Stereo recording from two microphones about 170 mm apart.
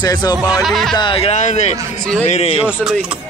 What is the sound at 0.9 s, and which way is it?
Speech, 30° left (ahead or behind).